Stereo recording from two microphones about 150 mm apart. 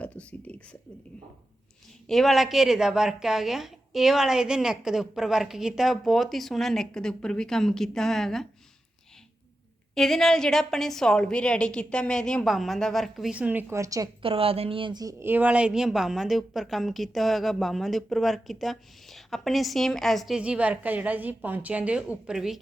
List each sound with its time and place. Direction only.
0.0 s a sound: 10° left (ahead or behind)
2.0 s a woman's voice: centre (ahead or behind)
9.9 s a woman's voice: 5° left (ahead or behind); by 14.1 s 20° right (ahead or behind)
14.2 s speech: 40° right (ahead or behind)
15.2 s a woman's voice: 10° right (ahead or behind)